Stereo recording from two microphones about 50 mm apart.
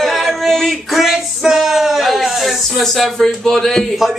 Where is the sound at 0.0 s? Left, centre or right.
Centre.